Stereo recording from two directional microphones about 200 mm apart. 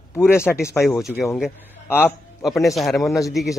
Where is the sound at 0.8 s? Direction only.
Centre (ahead or behind).